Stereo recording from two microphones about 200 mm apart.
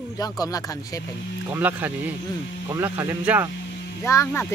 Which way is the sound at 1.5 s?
10° right (ahead or behind).